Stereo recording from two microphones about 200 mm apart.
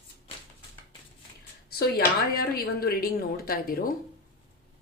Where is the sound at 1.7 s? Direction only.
50° left (ahead or behind).